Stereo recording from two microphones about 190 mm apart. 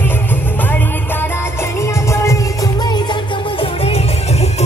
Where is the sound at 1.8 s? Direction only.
15° left (ahead or behind).